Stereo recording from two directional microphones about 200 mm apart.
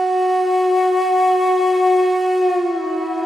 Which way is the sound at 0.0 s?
Centre (ahead or behind).